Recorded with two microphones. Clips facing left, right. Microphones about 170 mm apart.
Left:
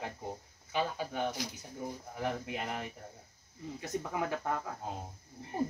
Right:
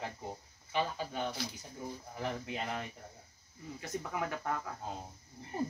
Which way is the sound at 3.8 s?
20° left (ahead or behind).